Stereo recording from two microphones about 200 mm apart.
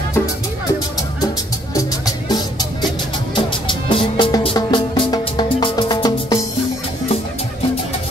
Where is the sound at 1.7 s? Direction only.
20° left (ahead or behind).